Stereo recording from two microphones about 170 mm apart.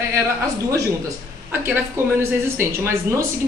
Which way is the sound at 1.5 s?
15° right (ahead or behind).